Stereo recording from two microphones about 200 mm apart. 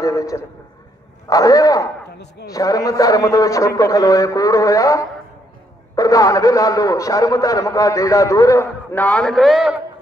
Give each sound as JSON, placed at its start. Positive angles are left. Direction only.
{"t": 0.0, "sound": "a sound", "side_deg": 15}
{"t": 1.3, "sound": "a man's voice", "side_deg": 15}
{"t": 2.1, "sound": "speech", "side_deg": 55}
{"t": 2.5, "sound": "a man's voice", "side_deg": 15}